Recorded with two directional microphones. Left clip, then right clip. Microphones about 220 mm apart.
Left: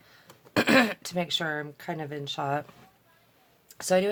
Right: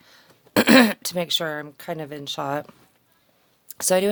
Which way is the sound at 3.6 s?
45° right (ahead or behind).